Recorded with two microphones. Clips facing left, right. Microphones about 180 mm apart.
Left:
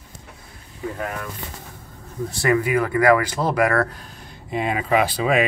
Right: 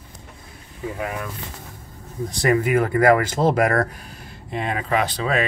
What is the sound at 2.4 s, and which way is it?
Speech, 45° right (ahead or behind).